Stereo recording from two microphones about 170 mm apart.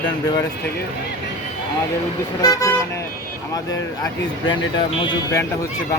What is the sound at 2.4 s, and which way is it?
Speech, 20° left (ahead or behind).